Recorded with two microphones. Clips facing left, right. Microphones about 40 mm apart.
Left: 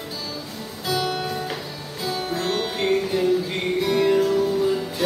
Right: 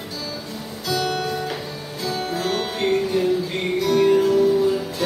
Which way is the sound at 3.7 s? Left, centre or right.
Centre.